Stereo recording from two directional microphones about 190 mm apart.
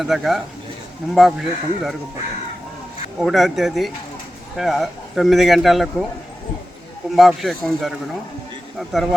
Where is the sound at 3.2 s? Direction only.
Centre (ahead or behind).